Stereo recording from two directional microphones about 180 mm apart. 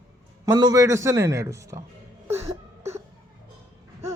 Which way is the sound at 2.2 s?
15° right (ahead or behind).